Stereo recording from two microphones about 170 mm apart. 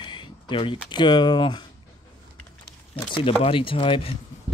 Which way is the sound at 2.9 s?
30° left (ahead or behind).